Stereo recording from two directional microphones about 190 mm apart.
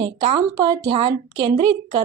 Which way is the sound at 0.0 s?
25° right (ahead or behind).